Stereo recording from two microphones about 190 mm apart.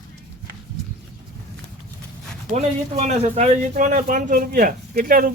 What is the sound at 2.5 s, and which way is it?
Speech, 35° right (ahead or behind).